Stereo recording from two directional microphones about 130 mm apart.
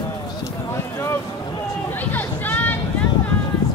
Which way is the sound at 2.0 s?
15° left (ahead or behind).